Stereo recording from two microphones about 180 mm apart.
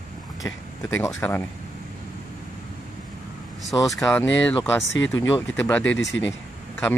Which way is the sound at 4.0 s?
10° left (ahead or behind).